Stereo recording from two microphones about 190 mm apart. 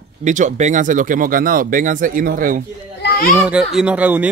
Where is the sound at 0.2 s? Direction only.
40° right (ahead or behind).